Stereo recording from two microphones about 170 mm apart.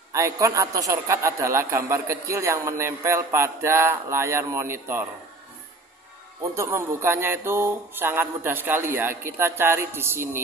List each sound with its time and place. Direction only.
0.1 s a man's voice: 20° right (ahead or behind)
6.5 s a man's voice: 15° right (ahead or behind)